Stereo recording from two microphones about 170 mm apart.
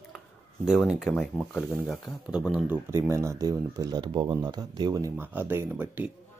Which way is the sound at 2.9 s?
15° right (ahead or behind).